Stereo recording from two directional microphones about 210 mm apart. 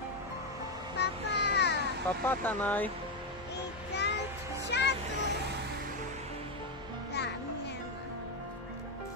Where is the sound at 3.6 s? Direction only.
55° left (ahead or behind).